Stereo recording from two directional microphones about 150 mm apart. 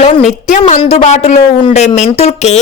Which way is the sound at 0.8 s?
45° left (ahead or behind).